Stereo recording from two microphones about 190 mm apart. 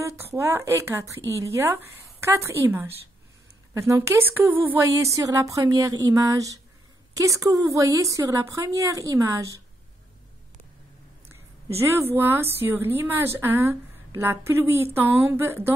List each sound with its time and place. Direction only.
0.2 s a woman's voice: 15° right (ahead or behind)
11.8 s a woman's voice: 10° right (ahead or behind)